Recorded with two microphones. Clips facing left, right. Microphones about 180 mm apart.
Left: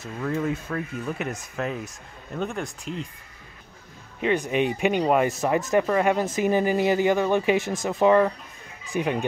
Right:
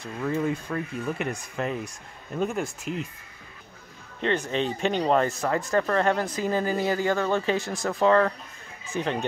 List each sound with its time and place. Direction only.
0.0 s speech: centre (ahead or behind)
4.2 s speech: 10° left (ahead or behind)